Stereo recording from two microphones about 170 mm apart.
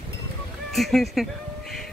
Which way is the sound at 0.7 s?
Centre (ahead or behind).